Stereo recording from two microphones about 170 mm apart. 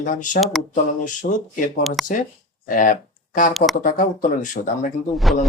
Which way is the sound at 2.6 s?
50° left (ahead or behind).